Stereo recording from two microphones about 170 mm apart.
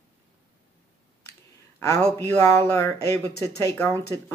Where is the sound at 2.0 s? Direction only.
5° left (ahead or behind).